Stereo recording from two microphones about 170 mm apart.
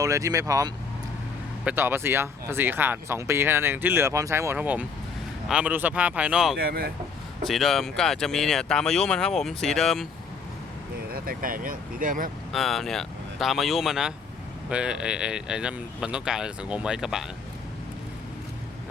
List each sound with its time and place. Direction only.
0.0 s speech: 20° right (ahead or behind); by 6.6 s 5° right (ahead or behind)
6.6 s speech: 65° right (ahead or behind)
7.4 s speech: centre (ahead or behind)
11.1 s speech: 55° right (ahead or behind)
12.5 s speech: centre (ahead or behind)